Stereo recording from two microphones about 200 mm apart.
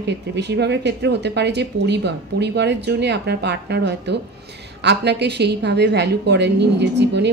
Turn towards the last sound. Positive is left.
turn(degrees=-60)  # may be behind; listen again after turning